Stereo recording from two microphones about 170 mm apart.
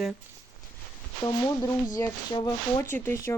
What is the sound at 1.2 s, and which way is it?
Speech, 20° left (ahead or behind).